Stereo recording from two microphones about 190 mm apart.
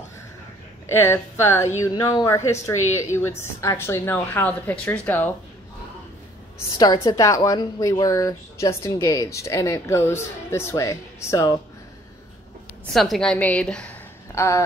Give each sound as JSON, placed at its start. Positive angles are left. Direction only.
{"t": 0.9, "sound": "a woman's voice", "side_deg": 15}
{"t": 6.8, "sound": "a woman's voice", "side_deg": 20}
{"t": 12.9, "sound": "a woman's voice", "side_deg": 0}
{"t": 14.3, "sound": "a sound", "side_deg": 15}